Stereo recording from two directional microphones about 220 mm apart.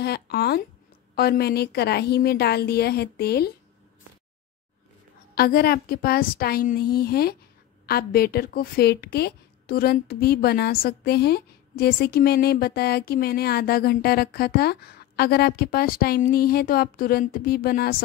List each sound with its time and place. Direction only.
0.0 s a woman's voice: 45° left (ahead or behind)
5.3 s a woman's voice: 45° left (ahead or behind)